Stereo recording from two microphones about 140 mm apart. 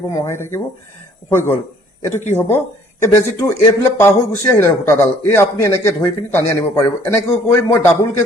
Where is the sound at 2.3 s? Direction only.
15° left (ahead or behind).